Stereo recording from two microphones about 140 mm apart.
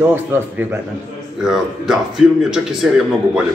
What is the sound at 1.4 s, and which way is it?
A man's voice, 5° right (ahead or behind).